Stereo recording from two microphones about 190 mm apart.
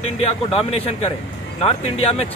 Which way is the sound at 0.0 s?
30° left (ahead or behind).